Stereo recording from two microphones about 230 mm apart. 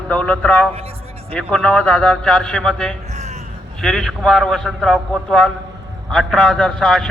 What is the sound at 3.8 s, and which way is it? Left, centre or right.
A man's voice, centre.